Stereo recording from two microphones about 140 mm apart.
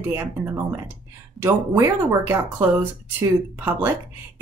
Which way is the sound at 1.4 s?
15° right (ahead or behind).